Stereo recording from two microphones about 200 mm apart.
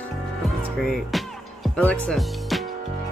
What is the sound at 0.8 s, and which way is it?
Music, centre (ahead or behind).